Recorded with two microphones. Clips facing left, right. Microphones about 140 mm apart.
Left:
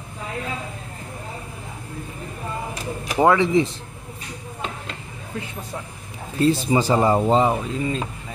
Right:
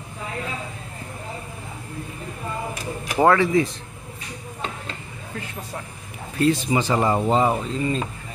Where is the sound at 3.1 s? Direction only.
15° left (ahead or behind).